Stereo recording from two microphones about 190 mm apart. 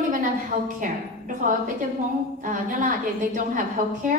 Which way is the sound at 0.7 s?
45° right (ahead or behind).